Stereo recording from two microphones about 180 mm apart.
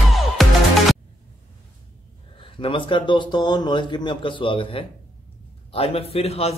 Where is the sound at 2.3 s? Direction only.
30° left (ahead or behind).